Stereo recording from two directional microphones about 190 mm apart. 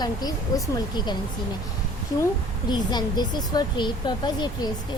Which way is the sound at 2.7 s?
20° left (ahead or behind).